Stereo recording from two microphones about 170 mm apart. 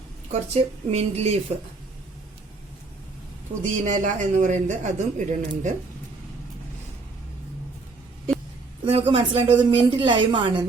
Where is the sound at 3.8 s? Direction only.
45° right (ahead or behind).